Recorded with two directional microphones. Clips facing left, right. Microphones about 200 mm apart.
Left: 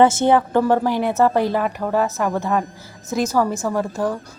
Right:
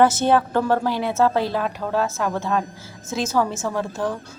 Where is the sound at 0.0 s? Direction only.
15° left (ahead or behind).